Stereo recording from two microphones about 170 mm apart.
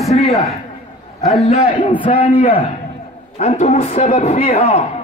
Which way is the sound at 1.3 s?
40° left (ahead or behind).